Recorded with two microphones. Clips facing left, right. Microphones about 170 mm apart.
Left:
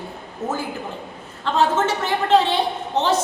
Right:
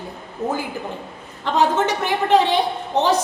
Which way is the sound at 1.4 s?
15° right (ahead or behind).